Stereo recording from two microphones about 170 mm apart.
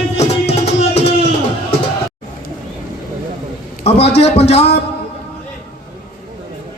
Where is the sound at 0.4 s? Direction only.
40° left (ahead or behind).